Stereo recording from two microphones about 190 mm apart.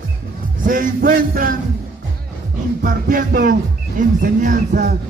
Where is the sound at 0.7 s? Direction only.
45° right (ahead or behind).